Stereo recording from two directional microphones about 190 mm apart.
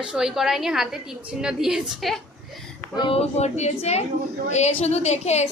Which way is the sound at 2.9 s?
25° left (ahead or behind).